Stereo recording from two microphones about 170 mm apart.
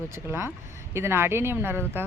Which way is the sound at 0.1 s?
15° right (ahead or behind).